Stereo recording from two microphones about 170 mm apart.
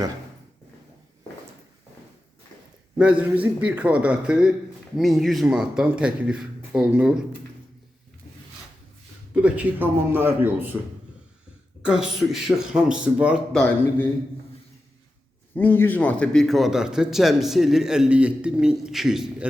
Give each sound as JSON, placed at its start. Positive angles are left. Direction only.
{"t": 3.0, "sound": "a man's voice", "side_deg": -5}
{"t": 9.3, "sound": "a man's voice", "side_deg": -10}
{"t": 11.8, "sound": "a man's voice", "side_deg": -5}
{"t": 15.5, "sound": "a man's voice", "side_deg": 10}